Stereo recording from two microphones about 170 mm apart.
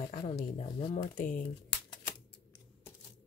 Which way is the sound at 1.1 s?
50° left (ahead or behind).